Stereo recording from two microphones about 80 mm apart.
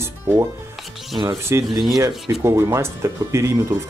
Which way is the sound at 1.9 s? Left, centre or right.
Right.